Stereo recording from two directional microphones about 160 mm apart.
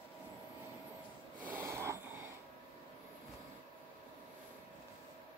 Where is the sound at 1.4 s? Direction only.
15° right (ahead or behind).